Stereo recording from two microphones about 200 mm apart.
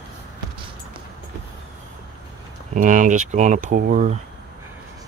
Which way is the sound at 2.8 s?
40° right (ahead or behind).